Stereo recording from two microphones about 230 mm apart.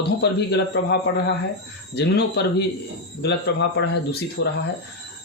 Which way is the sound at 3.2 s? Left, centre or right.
Left.